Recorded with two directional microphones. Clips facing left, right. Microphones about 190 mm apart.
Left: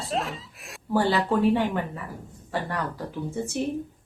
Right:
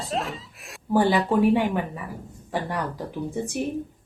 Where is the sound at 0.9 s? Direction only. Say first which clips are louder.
Right 3 dB; 15° right (ahead or behind).